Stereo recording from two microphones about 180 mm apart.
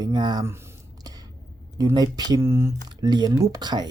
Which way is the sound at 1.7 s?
20° right (ahead or behind).